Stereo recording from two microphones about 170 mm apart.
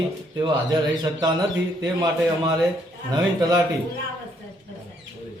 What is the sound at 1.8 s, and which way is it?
Speech, 20° right (ahead or behind).